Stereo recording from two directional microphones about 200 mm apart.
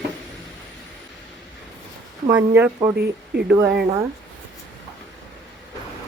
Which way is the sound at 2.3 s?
10° right (ahead or behind).